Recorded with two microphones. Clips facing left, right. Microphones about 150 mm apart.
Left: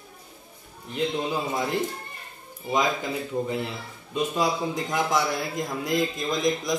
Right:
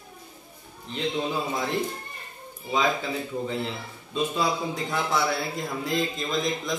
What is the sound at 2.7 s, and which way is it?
A man's voice, 15° left (ahead or behind).